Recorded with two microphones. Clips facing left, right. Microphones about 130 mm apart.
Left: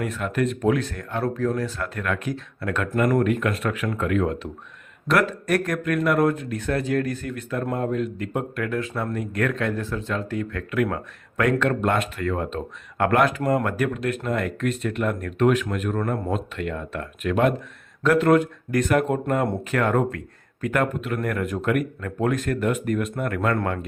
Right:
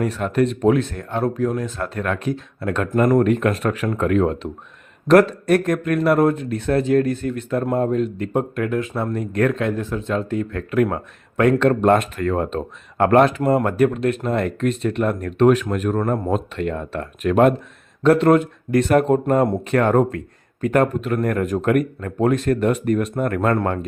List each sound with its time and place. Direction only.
0.0 s speech: 35° right (ahead or behind); by 1.7 s 15° right (ahead or behind)
1.8 s speech: 35° right (ahead or behind)
18.0 s speech: 30° right (ahead or behind)
18.9 s speech: 35° right (ahead or behind)